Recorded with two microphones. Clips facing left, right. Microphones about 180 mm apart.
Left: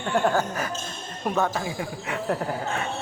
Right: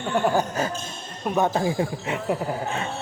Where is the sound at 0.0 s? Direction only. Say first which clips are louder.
Right 1 dB; 10° right (ahead or behind).